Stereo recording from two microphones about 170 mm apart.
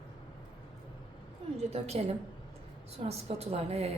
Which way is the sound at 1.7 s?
35° right (ahead or behind).